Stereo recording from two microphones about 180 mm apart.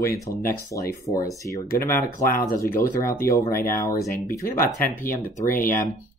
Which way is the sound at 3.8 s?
15° left (ahead or behind).